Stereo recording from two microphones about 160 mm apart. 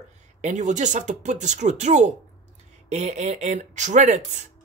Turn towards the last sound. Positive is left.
turn(degrees=-50)  # may be behind; listen again after turning